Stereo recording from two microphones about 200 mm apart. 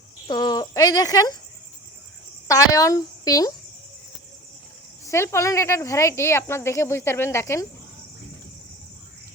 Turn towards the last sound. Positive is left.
turn(degrees=15)  # may be behind; listen again after turning